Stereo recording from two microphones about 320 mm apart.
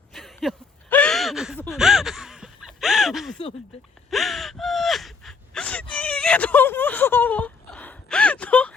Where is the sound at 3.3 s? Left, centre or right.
Centre.